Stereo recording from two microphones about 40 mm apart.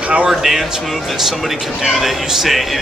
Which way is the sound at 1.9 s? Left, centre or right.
Centre.